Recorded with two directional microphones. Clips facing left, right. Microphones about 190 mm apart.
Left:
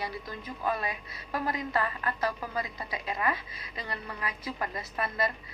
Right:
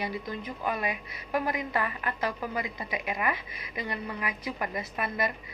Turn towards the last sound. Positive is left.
turn(degrees=-20)  # may be behind; listen again after turning